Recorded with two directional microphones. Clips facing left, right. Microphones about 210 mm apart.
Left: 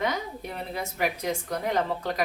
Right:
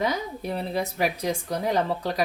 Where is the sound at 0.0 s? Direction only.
35° right (ahead or behind).